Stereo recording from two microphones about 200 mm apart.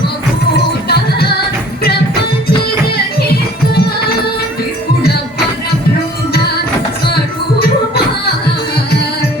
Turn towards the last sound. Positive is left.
turn(degrees=55)  # may be behind; listen again after turning